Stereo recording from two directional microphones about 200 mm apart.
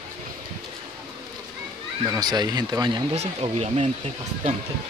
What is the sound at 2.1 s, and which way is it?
Speech, 20° right (ahead or behind).